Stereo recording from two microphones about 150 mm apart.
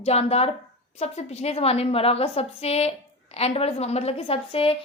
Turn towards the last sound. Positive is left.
turn(degrees=40)  # may be behind; listen again after turning